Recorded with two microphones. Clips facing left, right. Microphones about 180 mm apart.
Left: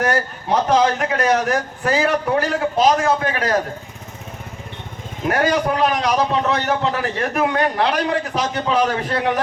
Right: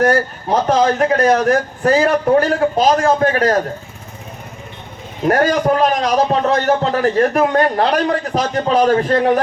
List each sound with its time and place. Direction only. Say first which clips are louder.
0.7 s a man's voice: right 4 dB; 40° right (ahead or behind)
5.3 s a man's voice: right 4 dB; 40° right (ahead or behind)